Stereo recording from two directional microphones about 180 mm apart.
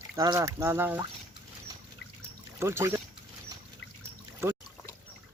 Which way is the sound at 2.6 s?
15° right (ahead or behind).